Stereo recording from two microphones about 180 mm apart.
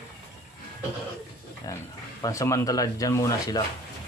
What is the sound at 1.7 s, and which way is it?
Speech, 20° left (ahead or behind).